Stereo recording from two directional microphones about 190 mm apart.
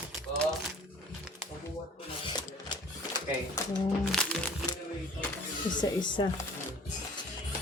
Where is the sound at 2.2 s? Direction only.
25° left (ahead or behind).